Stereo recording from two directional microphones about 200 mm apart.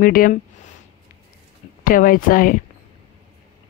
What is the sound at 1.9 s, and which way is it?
Speech, 45° left (ahead or behind).